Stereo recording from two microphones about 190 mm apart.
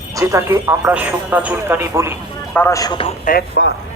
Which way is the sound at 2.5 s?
15° left (ahead or behind).